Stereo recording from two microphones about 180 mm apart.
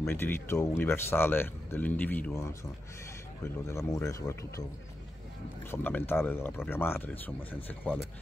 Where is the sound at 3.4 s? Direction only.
15° left (ahead or behind).